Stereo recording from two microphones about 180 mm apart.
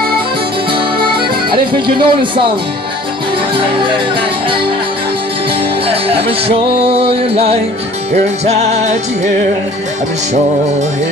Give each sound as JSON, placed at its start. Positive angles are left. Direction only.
{"t": 1.5, "sound": "speech", "side_deg": -25}
{"t": 6.8, "sound": "music", "side_deg": -30}